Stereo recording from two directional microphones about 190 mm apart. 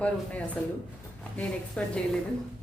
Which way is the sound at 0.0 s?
5° left (ahead or behind).